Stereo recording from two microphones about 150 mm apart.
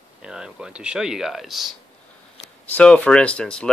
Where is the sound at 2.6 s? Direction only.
10° left (ahead or behind).